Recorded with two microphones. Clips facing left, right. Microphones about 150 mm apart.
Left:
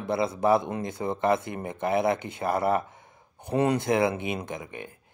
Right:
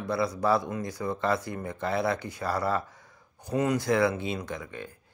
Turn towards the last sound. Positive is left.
turn(degrees=20)  # may be behind; listen again after turning